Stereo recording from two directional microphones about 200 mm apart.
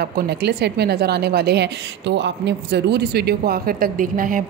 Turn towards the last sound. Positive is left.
turn(degrees=-40)  # may be behind; listen again after turning